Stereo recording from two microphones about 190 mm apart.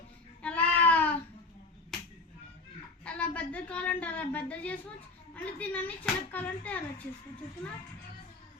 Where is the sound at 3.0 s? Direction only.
5° left (ahead or behind).